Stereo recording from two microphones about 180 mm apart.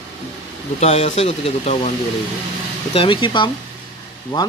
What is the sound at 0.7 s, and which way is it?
Speech, 40° left (ahead or behind).